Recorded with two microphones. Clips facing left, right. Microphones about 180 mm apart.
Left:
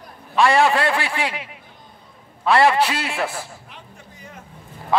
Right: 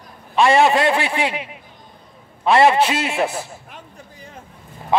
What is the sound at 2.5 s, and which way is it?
A man's voice, 20° right (ahead or behind).